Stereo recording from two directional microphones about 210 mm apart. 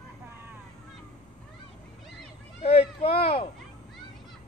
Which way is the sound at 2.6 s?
30° left (ahead or behind).